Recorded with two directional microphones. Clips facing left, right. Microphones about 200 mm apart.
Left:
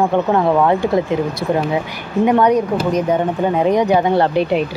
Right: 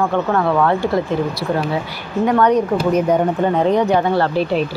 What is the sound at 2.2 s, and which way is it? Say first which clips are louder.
Speech: left 1 dB; 15° left (ahead or behind).